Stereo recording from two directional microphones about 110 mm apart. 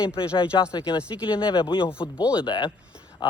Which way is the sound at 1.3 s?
50° left (ahead or behind).